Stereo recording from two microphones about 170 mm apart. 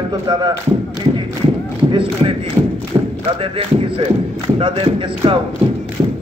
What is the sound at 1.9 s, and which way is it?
Speech, 30° right (ahead or behind).